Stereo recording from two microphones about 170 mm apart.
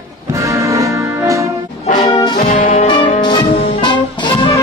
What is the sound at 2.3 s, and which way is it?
Brass instrument, 55° left (ahead or behind).